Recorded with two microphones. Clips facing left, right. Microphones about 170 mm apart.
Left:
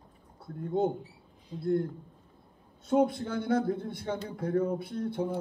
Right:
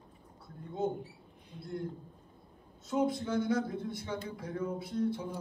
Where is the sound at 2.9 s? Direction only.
60° left (ahead or behind).